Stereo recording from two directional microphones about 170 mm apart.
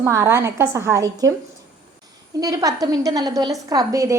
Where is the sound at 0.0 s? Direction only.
15° right (ahead or behind).